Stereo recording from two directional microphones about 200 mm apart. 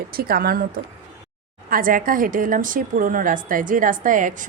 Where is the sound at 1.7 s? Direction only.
45° right (ahead or behind).